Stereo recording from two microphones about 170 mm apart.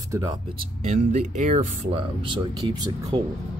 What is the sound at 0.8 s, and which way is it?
Speech, 45° right (ahead or behind).